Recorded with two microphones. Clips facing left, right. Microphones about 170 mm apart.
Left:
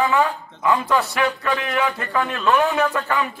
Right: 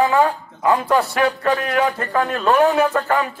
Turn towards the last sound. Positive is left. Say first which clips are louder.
# right 3 dB
turn(degrees=-40)  # may be behind; listen again after turning